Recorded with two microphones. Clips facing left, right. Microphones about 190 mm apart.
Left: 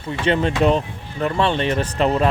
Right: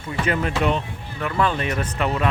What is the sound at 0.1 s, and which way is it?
Speech, 30° left (ahead or behind).